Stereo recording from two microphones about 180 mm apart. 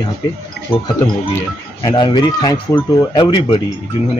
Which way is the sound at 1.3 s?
20° left (ahead or behind).